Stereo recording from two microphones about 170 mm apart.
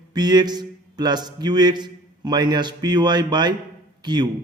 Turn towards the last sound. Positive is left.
turn(degrees=-25)  # may be behind; listen again after turning